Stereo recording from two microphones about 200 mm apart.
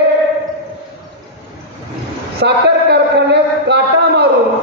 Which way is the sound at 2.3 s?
55° right (ahead or behind).